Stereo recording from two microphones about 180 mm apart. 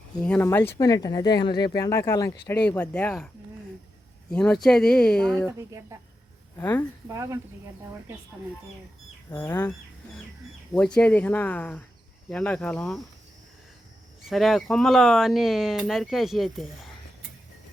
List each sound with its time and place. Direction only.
0.2 s speech: 10° left (ahead or behind)
4.3 s speech: 5° left (ahead or behind)
5.5 s speech: 20° right (ahead or behind)
6.6 s speech: 10° left (ahead or behind)
7.1 s speech: 15° right (ahead or behind)
9.3 s speech: 15° left (ahead or behind)
10.8 s speech: 5° left (ahead or behind)
14.3 s speech: centre (ahead or behind)